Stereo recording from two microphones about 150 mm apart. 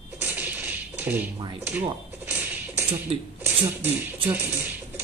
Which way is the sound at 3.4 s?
15° right (ahead or behind).